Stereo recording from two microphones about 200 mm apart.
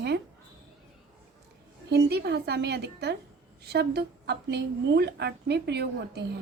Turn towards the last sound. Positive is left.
turn(degrees=-55)  # may be behind; listen again after turning